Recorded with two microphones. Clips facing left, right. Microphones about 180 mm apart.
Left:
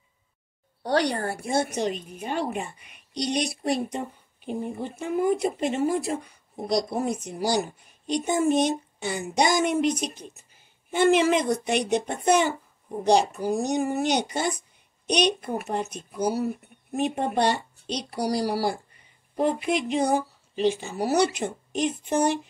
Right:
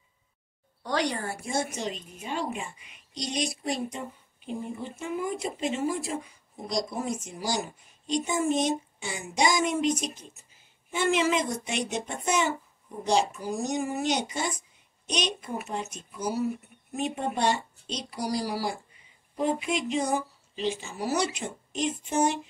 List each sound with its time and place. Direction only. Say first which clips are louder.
0.8 s speech: left 5 dB; 35° left (ahead or behind)
1.2 s speech: left 5 dB; 65° left (ahead or behind)